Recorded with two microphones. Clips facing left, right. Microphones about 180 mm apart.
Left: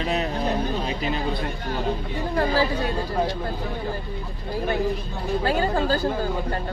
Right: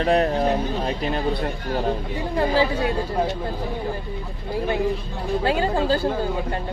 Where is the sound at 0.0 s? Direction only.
60° right (ahead or behind).